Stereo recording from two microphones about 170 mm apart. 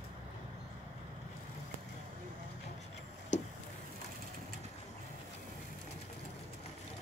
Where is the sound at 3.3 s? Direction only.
45° left (ahead or behind).